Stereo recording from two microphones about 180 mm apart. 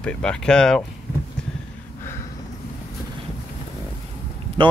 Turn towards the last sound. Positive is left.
turn(degrees=-30)  # may be behind; listen again after turning